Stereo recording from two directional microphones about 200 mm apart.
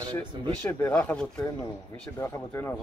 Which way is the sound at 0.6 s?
10° left (ahead or behind).